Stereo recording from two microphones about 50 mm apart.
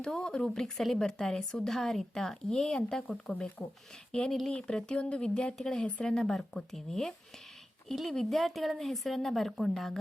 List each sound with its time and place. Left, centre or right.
0.0 s speech: centre
8.1 s a woman's voice: centre